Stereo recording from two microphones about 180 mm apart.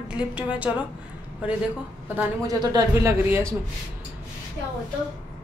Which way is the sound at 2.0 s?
10° right (ahead or behind).